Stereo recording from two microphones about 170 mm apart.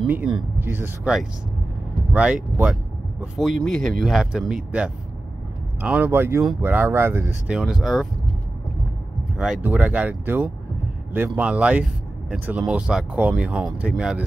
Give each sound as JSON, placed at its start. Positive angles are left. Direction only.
{"t": 0.0, "sound": "speech", "side_deg": -5}
{"t": 2.1, "sound": "speech", "side_deg": -5}
{"t": 9.4, "sound": "speech", "side_deg": -10}